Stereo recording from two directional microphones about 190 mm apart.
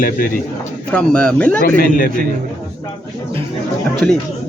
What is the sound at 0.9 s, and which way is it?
Speech, 5° left (ahead or behind).